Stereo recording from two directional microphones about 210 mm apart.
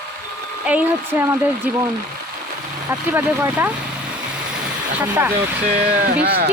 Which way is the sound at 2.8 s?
10° right (ahead or behind).